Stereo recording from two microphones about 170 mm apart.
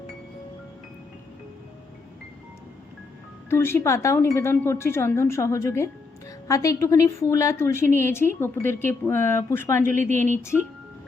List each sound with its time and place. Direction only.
3.5 s a woman's voice: 15° left (ahead or behind)
9.8 s speech: 50° right (ahead or behind)
10.2 s a woman's voice: 15° left (ahead or behind)